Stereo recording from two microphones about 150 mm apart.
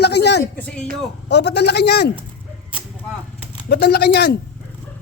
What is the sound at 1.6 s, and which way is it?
Speech, 90° left.